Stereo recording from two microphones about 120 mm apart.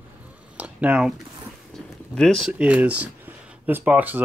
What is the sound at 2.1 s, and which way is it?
Speech, 5° left (ahead or behind).